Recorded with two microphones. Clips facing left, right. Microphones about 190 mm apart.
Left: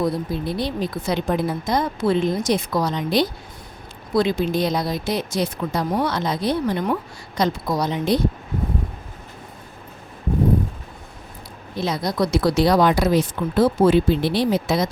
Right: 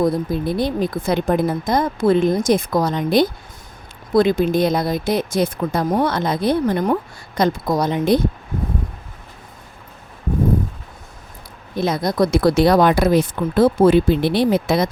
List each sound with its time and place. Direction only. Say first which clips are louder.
0.0 s a woman's voice: right 4 dB; 50° right (ahead or behind)
11.8 s speech: right 4 dB; 50° right (ahead or behind)